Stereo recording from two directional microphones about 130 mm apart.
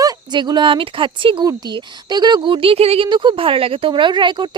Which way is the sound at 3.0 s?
40° right (ahead or behind).